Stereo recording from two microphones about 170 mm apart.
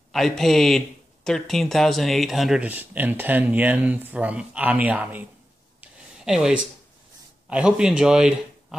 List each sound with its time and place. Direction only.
0.1 s speech: centre (ahead or behind)
5.8 s a sound: 5° right (ahead or behind)
7.4 s a man's voice: 5° right (ahead or behind)